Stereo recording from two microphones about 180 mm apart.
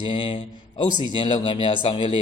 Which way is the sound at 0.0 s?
25° left (ahead or behind).